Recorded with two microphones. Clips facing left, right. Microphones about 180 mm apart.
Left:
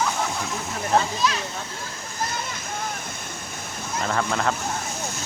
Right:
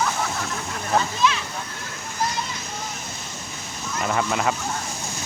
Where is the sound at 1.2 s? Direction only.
40° left (ahead or behind).